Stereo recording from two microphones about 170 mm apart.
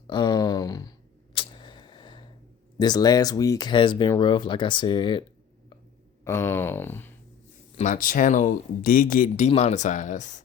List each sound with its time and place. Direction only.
0.1 s a sound: 25° left (ahead or behind)
2.7 s speech: 25° left (ahead or behind)
6.2 s speech: 15° left (ahead or behind)
7.8 s speech: 50° left (ahead or behind)